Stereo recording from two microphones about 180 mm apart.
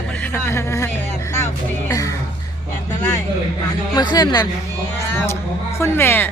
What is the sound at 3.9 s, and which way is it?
Speech, 25° left (ahead or behind).